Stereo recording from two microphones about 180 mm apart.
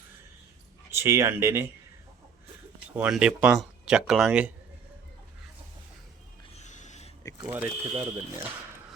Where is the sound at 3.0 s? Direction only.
5° right (ahead or behind).